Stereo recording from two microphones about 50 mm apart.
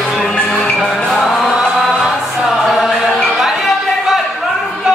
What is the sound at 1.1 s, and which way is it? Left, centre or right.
Chant, centre.